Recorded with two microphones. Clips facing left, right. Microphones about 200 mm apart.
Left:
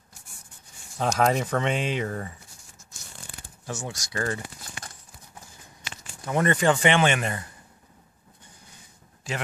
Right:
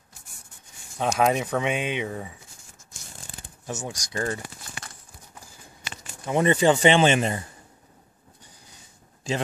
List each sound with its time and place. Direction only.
0.9 s speech: 5° right (ahead or behind)
3.6 s speech: 15° right (ahead or behind)
6.2 s speech: 15° right (ahead or behind)